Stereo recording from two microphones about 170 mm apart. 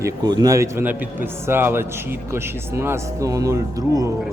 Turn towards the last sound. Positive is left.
turn(degrees=-20)  # may be behind; listen again after turning